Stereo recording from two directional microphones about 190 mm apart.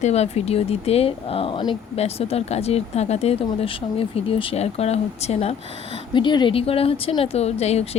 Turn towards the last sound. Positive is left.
turn(degrees=35)  # may be behind; listen again after turning